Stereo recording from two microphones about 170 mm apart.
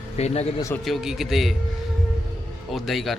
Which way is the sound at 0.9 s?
Centre (ahead or behind).